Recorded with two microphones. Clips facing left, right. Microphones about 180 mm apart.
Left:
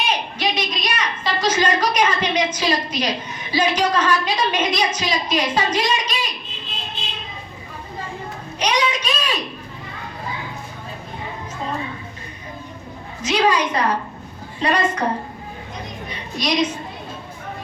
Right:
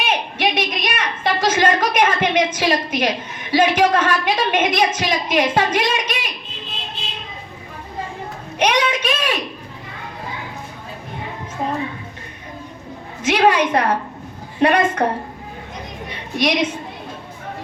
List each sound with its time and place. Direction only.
0.0 s a sound: 55° right (ahead or behind)
3.5 s a woman's voice: 55° right (ahead or behind)
8.5 s a woman's voice: 55° right (ahead or behind)
11.6 s a sound: 60° right (ahead or behind)
13.2 s a woman's voice: 55° right (ahead or behind)
16.4 s a woman's voice: 55° right (ahead or behind)